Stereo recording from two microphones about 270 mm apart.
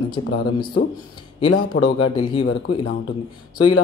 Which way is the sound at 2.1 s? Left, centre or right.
Centre.